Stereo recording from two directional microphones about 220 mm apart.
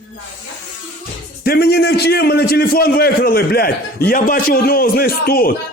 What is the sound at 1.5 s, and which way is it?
A man's voice, 45° left (ahead or behind).